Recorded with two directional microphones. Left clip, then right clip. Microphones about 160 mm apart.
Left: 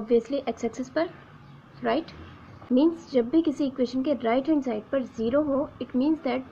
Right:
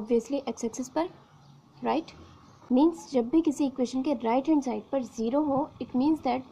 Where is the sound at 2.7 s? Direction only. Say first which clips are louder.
Left 1 dB; 60° right (ahead or behind).